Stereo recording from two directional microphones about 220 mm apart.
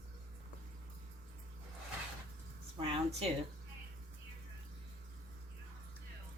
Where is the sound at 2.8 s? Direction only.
30° right (ahead or behind).